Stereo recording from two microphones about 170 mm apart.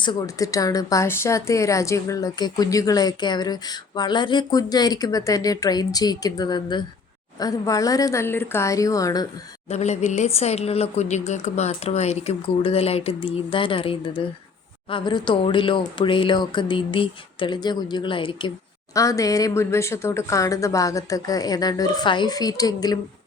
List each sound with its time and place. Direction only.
0.0 s speech: 25° left (ahead or behind)
9.6 s speech: 40° left (ahead or behind)
18.9 s speech: 20° left (ahead or behind)